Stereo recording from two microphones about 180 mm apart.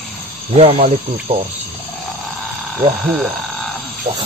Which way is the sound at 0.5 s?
35° right (ahead or behind).